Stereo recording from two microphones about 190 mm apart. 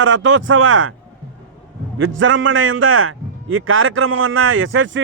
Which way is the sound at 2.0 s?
90° right.